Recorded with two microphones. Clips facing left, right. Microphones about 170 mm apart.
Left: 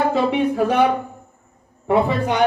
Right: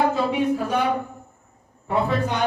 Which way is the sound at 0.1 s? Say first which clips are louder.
Left 3 dB; 85° left.